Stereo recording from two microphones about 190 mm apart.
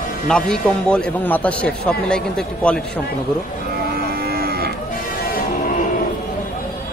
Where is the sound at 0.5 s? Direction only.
5° left (ahead or behind).